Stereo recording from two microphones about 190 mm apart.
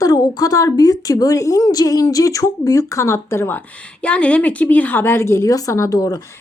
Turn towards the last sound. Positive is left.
turn(degrees=20)  # may be behind; listen again after turning